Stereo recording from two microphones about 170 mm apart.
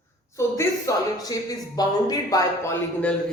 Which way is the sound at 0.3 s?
15° left (ahead or behind).